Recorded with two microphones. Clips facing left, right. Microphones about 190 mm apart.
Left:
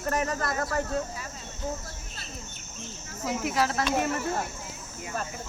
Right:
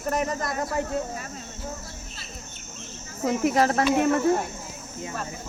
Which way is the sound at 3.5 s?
50° right (ahead or behind).